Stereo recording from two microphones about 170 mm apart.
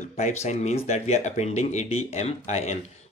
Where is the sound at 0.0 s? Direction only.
40° left (ahead or behind).